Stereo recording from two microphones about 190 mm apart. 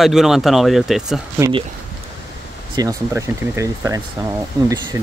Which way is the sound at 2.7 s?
20° right (ahead or behind).